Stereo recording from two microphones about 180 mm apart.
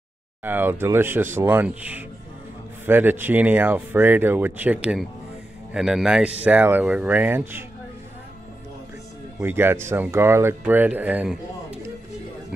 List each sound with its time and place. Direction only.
0.4 s speech: 10° right (ahead or behind)
9.4 s speech: 10° right (ahead or behind)